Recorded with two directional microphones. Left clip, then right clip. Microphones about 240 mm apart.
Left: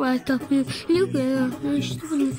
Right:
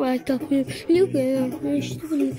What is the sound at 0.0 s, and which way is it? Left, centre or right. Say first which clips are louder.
Speech: even; centre.